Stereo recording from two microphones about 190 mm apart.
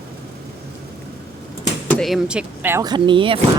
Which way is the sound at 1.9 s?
Centre (ahead or behind).